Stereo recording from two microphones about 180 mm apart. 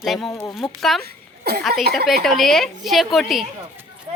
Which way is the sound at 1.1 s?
60° right (ahead or behind).